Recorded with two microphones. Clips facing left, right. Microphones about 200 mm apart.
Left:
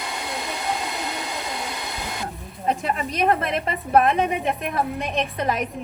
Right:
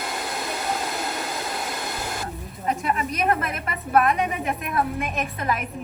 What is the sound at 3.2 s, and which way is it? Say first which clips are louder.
Speech: left 5 dB; 30° left (ahead or behind).